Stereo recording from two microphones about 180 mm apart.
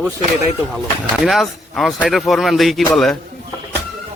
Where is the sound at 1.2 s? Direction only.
Centre (ahead or behind).